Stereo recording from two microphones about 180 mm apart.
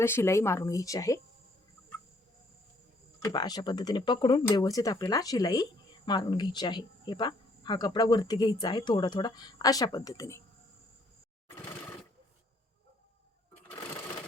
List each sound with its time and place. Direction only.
0.0 s speech: 15° left (ahead or behind)
3.2 s speech: 20° left (ahead or behind)
11.4 s a sound: 15° left (ahead or behind)